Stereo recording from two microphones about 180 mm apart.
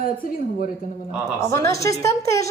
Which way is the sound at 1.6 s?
15° left (ahead or behind).